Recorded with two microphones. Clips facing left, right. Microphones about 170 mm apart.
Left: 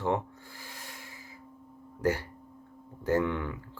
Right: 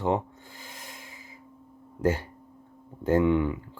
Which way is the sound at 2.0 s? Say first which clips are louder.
Right 3 dB; 20° right (ahead or behind).